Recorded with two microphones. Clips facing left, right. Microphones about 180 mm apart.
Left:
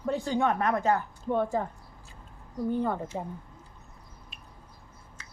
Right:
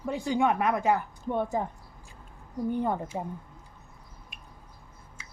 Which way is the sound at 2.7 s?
15° right (ahead or behind).